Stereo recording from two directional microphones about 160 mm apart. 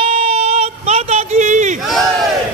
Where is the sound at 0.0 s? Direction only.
40° right (ahead or behind).